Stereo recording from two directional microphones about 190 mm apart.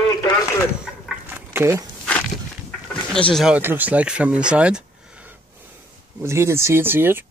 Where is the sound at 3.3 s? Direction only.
5° right (ahead or behind).